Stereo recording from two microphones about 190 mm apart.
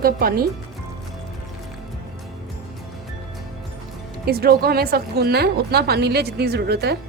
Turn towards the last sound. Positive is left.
turn(degrees=-60)  # may be behind; listen again after turning